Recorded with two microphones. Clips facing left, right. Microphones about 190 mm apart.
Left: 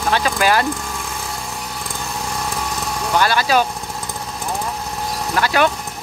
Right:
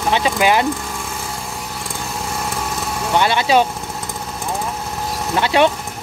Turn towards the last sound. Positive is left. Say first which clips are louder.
# right 2 dB
turn(degrees=-25)  # may be behind; listen again after turning